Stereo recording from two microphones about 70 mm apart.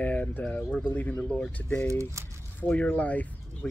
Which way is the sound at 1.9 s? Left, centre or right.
Right.